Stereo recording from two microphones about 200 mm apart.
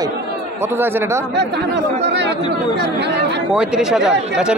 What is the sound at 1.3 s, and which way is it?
Speech, 55° right (ahead or behind).